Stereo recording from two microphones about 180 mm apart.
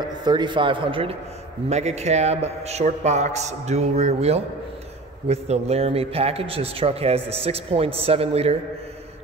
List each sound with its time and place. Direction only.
0.0 s a man's voice: 25° right (ahead or behind)